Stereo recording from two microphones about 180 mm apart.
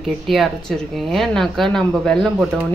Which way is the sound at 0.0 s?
Centre (ahead or behind).